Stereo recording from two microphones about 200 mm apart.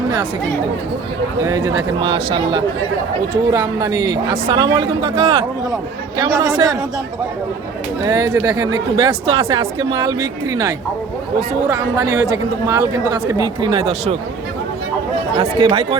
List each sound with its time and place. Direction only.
1.4 s speech: 15° right (ahead or behind)
6.1 s speech: 15° right (ahead or behind)
8.0 s speech: 20° right (ahead or behind)
15.4 s speech: 25° right (ahead or behind)